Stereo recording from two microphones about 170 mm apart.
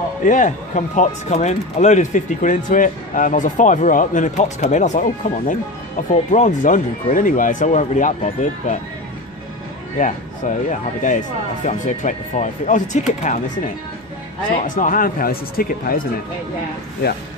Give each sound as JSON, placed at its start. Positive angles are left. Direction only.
{"t": 0.2, "sound": "speech", "side_deg": 50}
{"t": 9.9, "sound": "speech", "side_deg": 50}
{"t": 14.8, "sound": "speech", "side_deg": 55}